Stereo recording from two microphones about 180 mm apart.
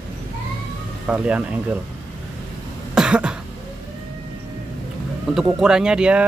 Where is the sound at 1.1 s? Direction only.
5° right (ahead or behind).